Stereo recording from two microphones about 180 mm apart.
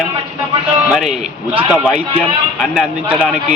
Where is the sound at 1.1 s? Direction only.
30° right (ahead or behind).